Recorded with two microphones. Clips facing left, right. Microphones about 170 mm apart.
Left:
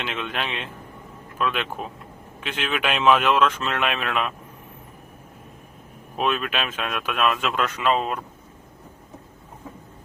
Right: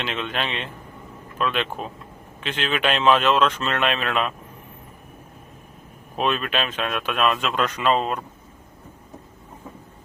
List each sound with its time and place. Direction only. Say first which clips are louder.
0.0 s speech: right 2 dB; 5° left (ahead or behind)
6.1 s speech: right 1 dB; 5° left (ahead or behind)